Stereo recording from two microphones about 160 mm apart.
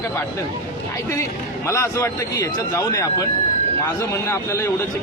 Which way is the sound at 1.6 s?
20° left (ahead or behind).